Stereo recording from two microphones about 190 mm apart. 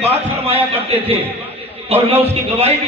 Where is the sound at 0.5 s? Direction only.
30° right (ahead or behind).